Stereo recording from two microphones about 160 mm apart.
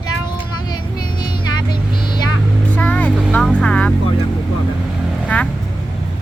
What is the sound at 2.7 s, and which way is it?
Vehicle, 10° left (ahead or behind).